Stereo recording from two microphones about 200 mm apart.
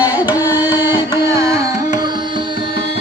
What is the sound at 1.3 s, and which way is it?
Carnatic music, 15° right (ahead or behind).